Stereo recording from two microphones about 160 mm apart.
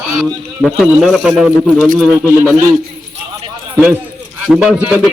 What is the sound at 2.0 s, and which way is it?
Speech, 10° right (ahead or behind).